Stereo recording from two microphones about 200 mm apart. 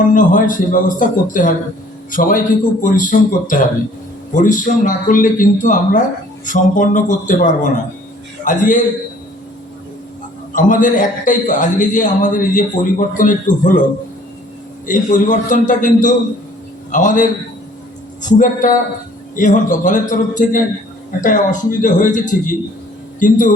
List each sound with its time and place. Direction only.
0.0 s a man's voice: 40° left (ahead or behind)
10.5 s a man's voice: 40° left (ahead or behind)
14.8 s a man's voice: 40° left (ahead or behind)